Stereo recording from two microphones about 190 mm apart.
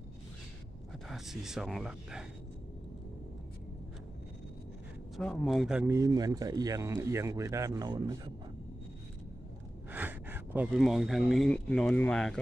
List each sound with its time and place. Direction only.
1.0 s speech: centre (ahead or behind)
5.1 s speech: centre (ahead or behind)
5.9 s speech: 20° right (ahead or behind)
9.8 s speech: 10° right (ahead or behind)